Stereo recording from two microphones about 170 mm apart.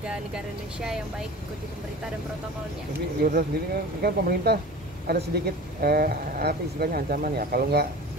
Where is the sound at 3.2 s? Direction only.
65° right (ahead or behind).